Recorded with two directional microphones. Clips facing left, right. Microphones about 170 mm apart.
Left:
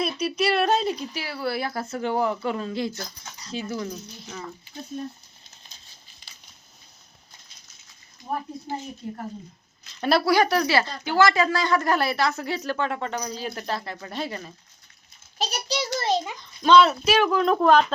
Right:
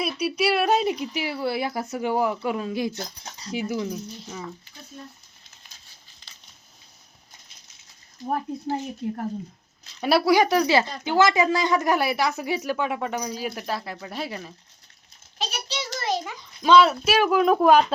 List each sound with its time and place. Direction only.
0.2 s speech: 10° right (ahead or behind)
10.0 s speech: 10° right (ahead or behind)
15.4 s a sound: 40° left (ahead or behind); by 16.4 s 20° left (ahead or behind)
16.6 s speech: 5° right (ahead or behind)